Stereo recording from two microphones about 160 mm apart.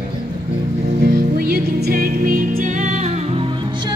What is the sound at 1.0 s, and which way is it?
Music, 75° right (ahead or behind).